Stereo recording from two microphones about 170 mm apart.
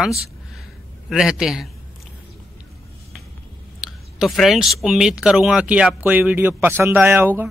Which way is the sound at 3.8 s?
Centre (ahead or behind).